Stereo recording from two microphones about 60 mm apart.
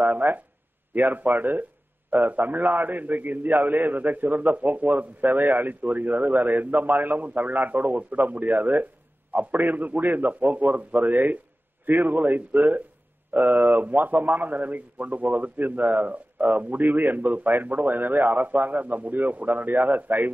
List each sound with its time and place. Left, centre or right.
0.0 s a man's voice: right